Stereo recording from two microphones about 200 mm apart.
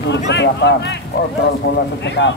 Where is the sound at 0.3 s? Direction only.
60° left (ahead or behind).